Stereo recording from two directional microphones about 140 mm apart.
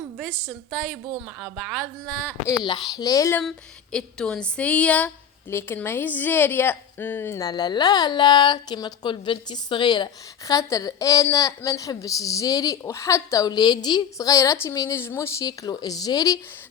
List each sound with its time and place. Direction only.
0.2 s speech: 5° left (ahead or behind)
2.5 s a woman's voice: 30° left (ahead or behind)
3.9 s a woman's voice: 5° left (ahead or behind); by 16.4 s 25° left (ahead or behind)